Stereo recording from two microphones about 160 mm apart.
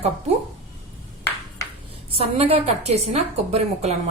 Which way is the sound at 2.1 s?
40° right (ahead or behind).